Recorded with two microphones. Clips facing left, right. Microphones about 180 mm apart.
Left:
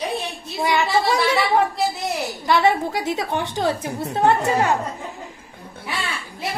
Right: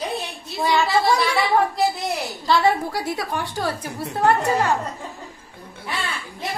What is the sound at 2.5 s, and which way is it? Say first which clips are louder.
A woman's voice: left 1 dB; 20° left (ahead or behind).